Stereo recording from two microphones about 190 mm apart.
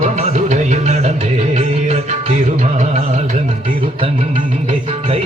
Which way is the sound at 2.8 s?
40° right (ahead or behind).